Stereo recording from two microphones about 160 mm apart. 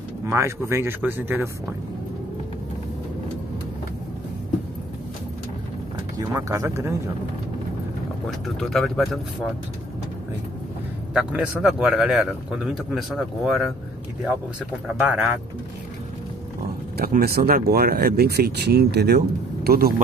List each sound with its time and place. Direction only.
0.2 s speech: 15° right (ahead or behind)
6.1 s speech: 20° right (ahead or behind)
8.3 s a man's voice: centre (ahead or behind)
11.1 s a man's voice: 5° right (ahead or behind)
15.0 s speech: 5° right (ahead or behind)
16.9 s speech: 70° right (ahead or behind)